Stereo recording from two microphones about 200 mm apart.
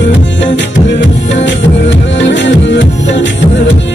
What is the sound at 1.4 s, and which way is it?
Music, 65° left (ahead or behind).